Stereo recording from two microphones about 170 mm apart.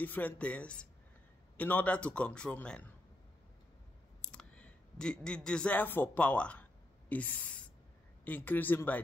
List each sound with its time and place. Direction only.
0.0 s a man's voice: 10° left (ahead or behind)
4.2 s a man's voice: 5° left (ahead or behind)